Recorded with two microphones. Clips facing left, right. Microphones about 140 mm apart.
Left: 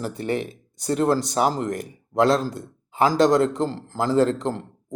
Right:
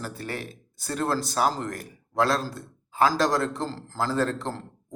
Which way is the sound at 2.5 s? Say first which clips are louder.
Left 1 dB; 20° left (ahead or behind).